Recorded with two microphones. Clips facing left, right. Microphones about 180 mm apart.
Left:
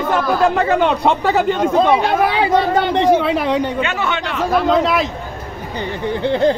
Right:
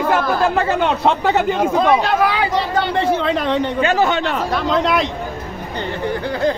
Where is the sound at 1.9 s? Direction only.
25° left (ahead or behind).